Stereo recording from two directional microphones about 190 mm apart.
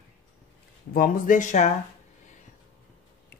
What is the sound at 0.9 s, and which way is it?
Speech, 45° left (ahead or behind).